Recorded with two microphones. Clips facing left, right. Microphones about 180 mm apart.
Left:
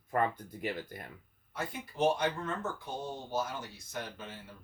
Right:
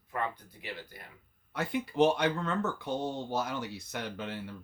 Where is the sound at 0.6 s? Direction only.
50° left (ahead or behind).